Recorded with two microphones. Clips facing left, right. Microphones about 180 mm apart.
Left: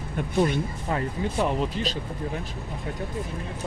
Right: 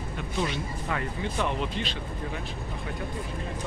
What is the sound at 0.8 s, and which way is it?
Speech, 35° left (ahead or behind).